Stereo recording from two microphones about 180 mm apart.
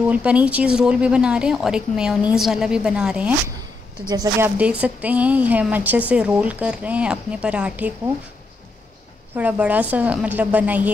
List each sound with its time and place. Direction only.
0.1 s speech: 5° right (ahead or behind)
4.1 s a woman's voice: 20° right (ahead or behind)
4.6 s a woman's voice: 5° right (ahead or behind)
9.3 s a woman's voice: 10° right (ahead or behind)